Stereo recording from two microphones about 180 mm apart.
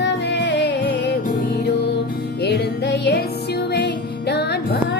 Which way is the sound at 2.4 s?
65° left (ahead or behind).